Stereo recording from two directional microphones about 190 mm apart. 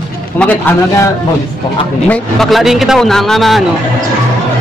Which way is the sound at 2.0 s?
5° left (ahead or behind).